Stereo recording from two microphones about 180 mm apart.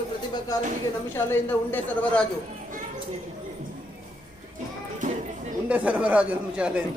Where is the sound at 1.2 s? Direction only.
10° left (ahead or behind).